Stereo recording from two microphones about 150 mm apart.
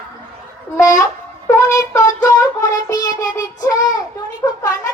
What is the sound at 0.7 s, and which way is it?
Child singing, 20° left (ahead or behind).